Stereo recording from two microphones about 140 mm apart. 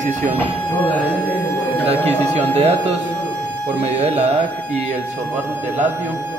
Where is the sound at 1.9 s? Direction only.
45° right (ahead or behind).